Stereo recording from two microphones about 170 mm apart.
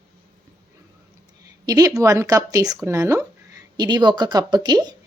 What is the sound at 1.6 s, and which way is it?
A woman's voice, 20° right (ahead or behind).